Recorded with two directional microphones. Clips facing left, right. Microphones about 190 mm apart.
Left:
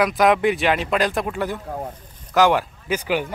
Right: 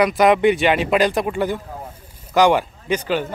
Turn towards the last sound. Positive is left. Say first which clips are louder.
# right 2 dB
turn(degrees=10)  # may be behind; listen again after turning